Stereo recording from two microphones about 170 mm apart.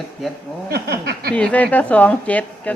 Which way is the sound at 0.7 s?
70° right (ahead or behind).